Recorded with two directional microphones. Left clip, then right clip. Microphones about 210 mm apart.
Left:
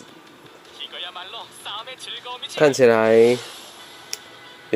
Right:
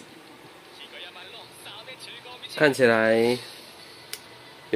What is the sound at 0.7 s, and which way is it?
Speech, centre (ahead or behind).